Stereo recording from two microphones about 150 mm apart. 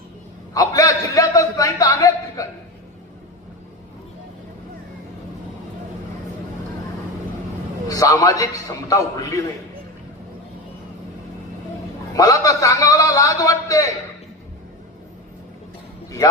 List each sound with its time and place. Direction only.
0.5 s a man's voice: 20° left (ahead or behind)
7.9 s a man's voice: 25° left (ahead or behind)
12.1 s a man's voice: 25° left (ahead or behind)